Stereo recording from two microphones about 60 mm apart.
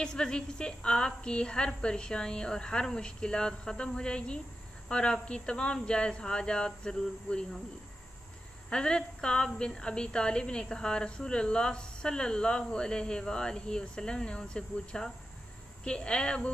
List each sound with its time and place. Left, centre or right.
0.0 s a woman's voice: centre
8.6 s a woman's voice: centre